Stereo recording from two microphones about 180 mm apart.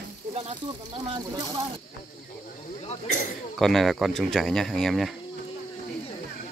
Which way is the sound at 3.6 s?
Centre (ahead or behind).